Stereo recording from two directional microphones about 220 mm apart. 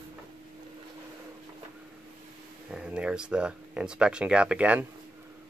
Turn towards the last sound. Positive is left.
turn(degrees=-5)  # may be behind; listen again after turning